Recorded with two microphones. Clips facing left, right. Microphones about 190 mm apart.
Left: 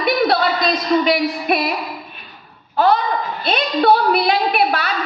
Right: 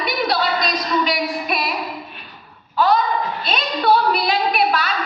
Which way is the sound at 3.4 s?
60° left (ahead or behind).